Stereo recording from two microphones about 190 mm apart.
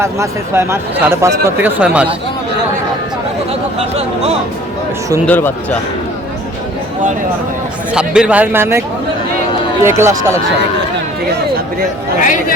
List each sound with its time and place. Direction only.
0.0 s speech: 15° right (ahead or behind)
5.2 s speech: 10° left (ahead or behind)
7.9 s speech: 5° right (ahead or behind)
10.0 s speech: 15° right (ahead or behind)
12.2 s speech: 45° left (ahead or behind)